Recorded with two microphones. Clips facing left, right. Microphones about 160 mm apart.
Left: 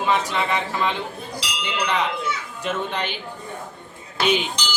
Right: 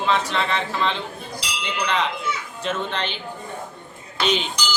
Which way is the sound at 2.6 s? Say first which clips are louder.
Even; 15° left (ahead or behind).